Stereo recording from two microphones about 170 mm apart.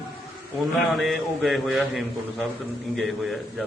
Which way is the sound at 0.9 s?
Centre (ahead or behind).